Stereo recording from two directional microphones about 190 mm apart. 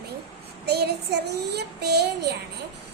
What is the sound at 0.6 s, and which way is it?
Child singing, 60° right (ahead or behind).